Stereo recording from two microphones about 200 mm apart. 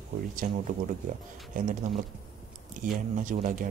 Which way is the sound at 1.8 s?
40° right (ahead or behind).